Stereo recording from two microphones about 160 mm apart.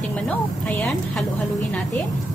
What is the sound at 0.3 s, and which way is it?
Speech, 10° left (ahead or behind).